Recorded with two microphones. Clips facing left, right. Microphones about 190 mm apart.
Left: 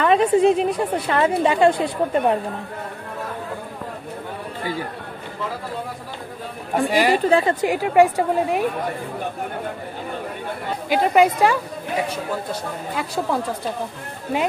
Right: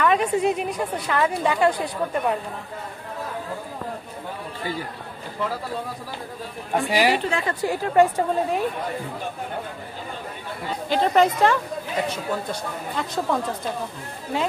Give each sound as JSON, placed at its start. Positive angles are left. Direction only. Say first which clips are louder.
{"t": 0.0, "sound": "a woman's voice", "louder": "left 5 dB", "side_deg": 30}
{"t": 6.7, "sound": "a woman's voice", "louder": "left 2 dB", "side_deg": 0}
{"t": 7.2, "sound": "a woman's voice", "louder": "left 8 dB", "side_deg": 35}
{"t": 7.6, "sound": "a woman's voice", "louder": "left 3 dB", "side_deg": 15}
{"t": 10.9, "sound": "a woman's voice", "louder": "left 2 dB", "side_deg": 10}
{"t": 12.9, "sound": "a woman's voice", "louder": "left 1 dB", "side_deg": 10}